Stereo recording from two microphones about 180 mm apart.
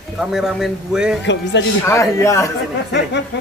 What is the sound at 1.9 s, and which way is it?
Speech, 15° left (ahead or behind).